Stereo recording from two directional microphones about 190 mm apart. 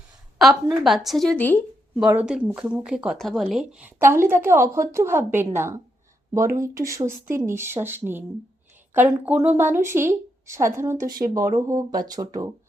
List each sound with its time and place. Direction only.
0.3 s a woman's voice: centre (ahead or behind)
2.0 s speech: 5° right (ahead or behind)